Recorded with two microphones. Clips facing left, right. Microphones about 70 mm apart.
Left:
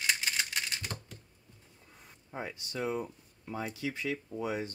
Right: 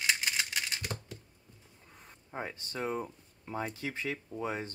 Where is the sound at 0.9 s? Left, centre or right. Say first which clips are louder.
Right 2 dB; centre.